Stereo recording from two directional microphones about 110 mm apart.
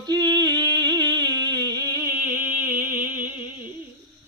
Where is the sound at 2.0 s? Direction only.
20° right (ahead or behind).